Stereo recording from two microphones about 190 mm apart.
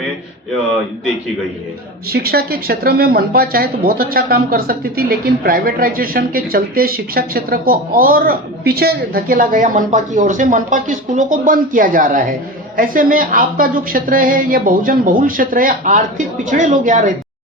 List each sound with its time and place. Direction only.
2.0 s a woman's voice: 55° right (ahead or behind)